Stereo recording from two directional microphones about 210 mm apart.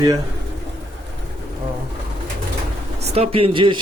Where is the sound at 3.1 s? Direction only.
30° right (ahead or behind).